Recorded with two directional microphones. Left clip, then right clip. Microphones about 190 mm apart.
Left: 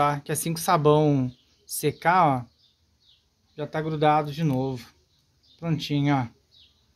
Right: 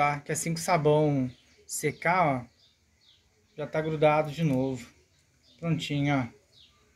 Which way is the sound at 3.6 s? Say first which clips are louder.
Even; 60° left (ahead or behind).